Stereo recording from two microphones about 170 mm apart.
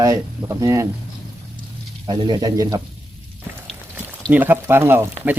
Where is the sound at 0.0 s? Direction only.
20° right (ahead or behind).